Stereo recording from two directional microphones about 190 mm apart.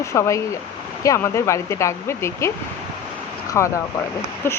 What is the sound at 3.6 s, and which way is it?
Speech, 15° left (ahead or behind).